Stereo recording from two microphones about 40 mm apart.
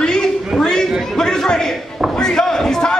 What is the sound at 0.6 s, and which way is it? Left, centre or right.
Chatter, centre.